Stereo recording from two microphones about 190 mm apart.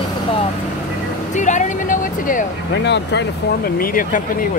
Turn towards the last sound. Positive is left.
turn(degrees=45)  # may be behind; listen again after turning